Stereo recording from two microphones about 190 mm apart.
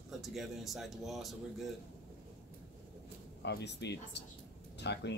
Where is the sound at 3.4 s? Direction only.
65° left (ahead or behind).